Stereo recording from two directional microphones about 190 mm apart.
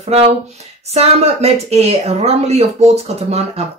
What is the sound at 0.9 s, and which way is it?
Speech, 35° right (ahead or behind).